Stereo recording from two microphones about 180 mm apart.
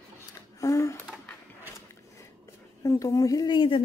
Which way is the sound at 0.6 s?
20° left (ahead or behind).